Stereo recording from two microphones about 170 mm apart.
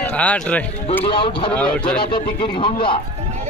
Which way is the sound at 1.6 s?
5° left (ahead or behind).